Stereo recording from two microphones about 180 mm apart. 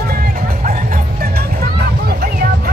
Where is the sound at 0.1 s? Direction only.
55° right (ahead or behind).